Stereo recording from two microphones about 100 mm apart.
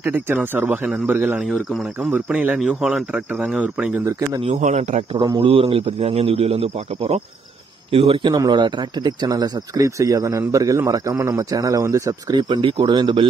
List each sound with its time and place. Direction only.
0.0 s speech: 20° right (ahead or behind)
1.4 s speech: centre (ahead or behind)
2.0 s speech: 20° right (ahead or behind)
5.1 s speech: 45° right (ahead or behind)
5.4 s a man's voice: 65° right (ahead or behind)
8.5 s speech: 50° right (ahead or behind)
12.4 s speech: 50° right (ahead or behind)